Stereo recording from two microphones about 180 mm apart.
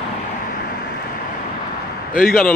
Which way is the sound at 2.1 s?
50° left (ahead or behind).